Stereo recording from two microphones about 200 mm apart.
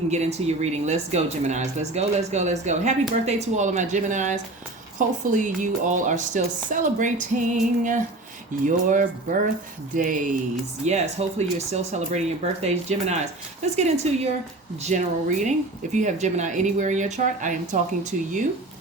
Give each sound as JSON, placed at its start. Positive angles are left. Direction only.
{"t": 0.1, "sound": "speech", "side_deg": -35}